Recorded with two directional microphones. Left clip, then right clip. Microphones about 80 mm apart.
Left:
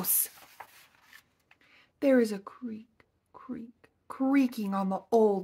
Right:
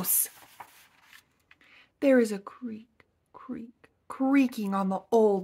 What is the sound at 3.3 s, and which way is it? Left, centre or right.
Whispering, right.